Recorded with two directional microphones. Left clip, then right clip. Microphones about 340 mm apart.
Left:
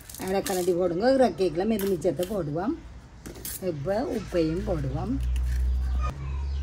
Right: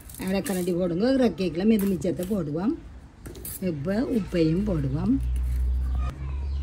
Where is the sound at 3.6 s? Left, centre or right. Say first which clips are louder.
Left 1 dB; right.